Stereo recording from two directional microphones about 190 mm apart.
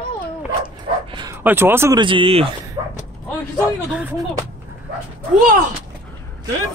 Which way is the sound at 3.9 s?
5° right (ahead or behind).